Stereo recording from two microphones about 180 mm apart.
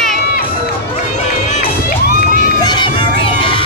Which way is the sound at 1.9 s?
55° left (ahead or behind).